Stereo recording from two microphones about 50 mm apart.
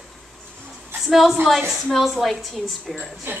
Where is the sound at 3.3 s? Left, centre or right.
Right.